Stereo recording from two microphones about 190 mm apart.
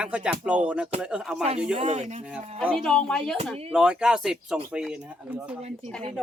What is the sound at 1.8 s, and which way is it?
Speech, 35° right (ahead or behind).